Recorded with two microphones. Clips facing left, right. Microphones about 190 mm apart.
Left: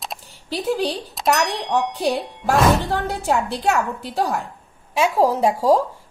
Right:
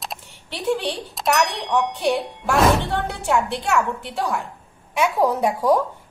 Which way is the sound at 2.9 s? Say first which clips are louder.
Left 1 dB; 35° left (ahead or behind).